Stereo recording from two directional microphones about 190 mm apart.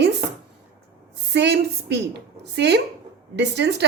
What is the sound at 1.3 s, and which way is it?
A woman's voice, 60° right (ahead or behind).